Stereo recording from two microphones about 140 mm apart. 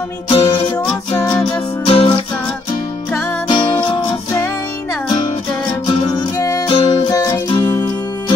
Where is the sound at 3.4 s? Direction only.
35° left (ahead or behind).